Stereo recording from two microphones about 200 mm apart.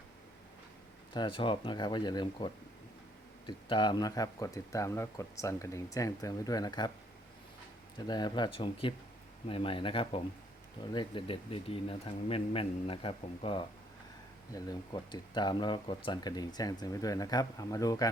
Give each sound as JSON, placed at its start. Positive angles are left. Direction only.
{"t": 1.1, "sound": "speech", "side_deg": 25}
{"t": 7.9, "sound": "speech", "side_deg": 20}